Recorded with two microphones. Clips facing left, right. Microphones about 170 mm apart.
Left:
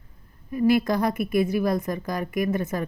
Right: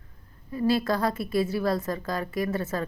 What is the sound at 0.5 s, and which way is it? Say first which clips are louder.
Speech: left 4 dB; 15° left (ahead or behind).